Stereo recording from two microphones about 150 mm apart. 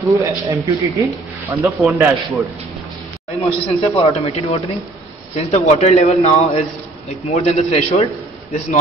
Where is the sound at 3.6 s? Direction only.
40° left (ahead or behind).